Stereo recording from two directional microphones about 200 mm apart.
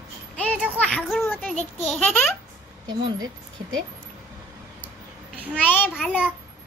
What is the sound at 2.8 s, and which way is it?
Speech, 20° right (ahead or behind).